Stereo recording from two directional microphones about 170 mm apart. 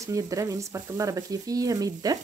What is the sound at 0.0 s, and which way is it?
Speech, 20° right (ahead or behind).